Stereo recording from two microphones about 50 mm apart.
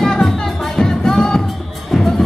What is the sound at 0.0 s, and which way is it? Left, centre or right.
Music, centre.